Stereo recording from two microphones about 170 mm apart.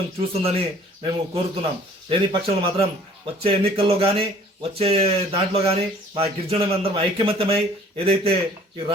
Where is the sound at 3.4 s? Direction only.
35° right (ahead or behind).